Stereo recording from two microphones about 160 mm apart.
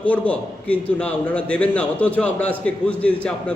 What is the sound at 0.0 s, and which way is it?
A man's voice, 10° left (ahead or behind).